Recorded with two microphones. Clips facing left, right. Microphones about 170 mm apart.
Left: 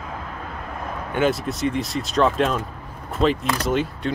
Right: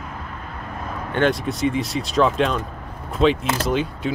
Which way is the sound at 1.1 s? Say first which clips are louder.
Right 1 dB; 5° left (ahead or behind).